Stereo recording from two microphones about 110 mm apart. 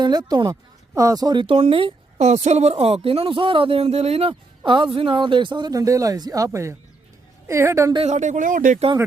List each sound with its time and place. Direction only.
0.0 s speech: 40° right (ahead or behind)
1.5 s a woman's voice: 65° right (ahead or behind); by 7.9 s 25° right (ahead or behind)
8.0 s speech: 90° right